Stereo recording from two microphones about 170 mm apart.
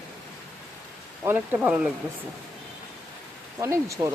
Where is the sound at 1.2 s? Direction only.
10° right (ahead or behind).